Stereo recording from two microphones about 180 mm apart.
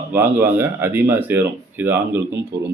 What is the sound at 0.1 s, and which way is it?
Speech, 10° right (ahead or behind).